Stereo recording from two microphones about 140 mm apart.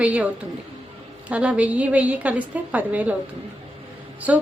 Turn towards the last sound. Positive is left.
turn(degrees=-10)  # may be behind; listen again after turning